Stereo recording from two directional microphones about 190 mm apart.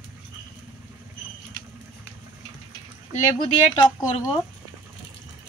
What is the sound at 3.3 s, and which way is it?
Speech, 20° left (ahead or behind).